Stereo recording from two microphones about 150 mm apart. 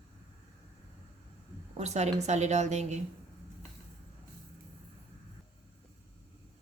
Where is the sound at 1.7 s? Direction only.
50° right (ahead or behind).